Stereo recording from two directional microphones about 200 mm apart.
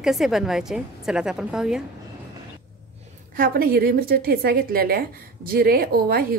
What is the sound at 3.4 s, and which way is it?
A woman's voice, 50° right (ahead or behind).